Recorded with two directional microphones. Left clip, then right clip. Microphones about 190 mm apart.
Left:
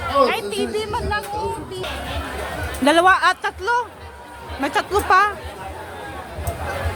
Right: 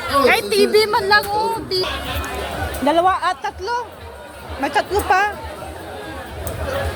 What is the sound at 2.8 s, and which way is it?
Speech, 25° left (ahead or behind).